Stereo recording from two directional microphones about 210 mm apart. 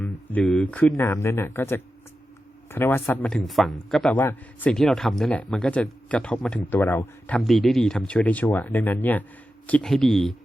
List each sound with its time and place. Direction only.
0.0 s a man's voice: 5° left (ahead or behind)